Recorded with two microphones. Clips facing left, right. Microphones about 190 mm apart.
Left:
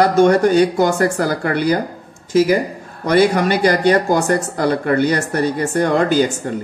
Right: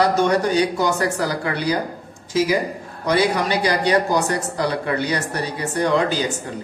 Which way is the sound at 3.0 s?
50° left (ahead or behind).